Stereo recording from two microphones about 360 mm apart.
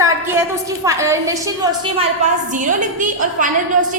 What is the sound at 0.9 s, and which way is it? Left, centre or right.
Speech, centre.